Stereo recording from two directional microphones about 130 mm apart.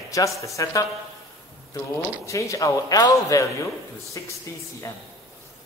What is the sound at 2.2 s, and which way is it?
A man's voice, 25° left (ahead or behind).